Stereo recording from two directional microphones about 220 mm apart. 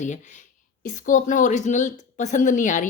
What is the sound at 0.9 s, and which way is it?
A woman's voice, 35° left (ahead or behind).